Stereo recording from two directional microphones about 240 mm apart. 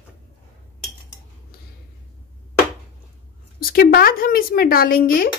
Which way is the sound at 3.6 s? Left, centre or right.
Left.